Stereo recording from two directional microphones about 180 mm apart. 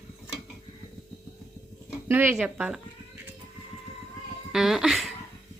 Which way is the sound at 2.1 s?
10° right (ahead or behind).